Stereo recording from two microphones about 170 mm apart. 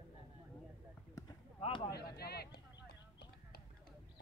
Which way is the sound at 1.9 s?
65° left (ahead or behind).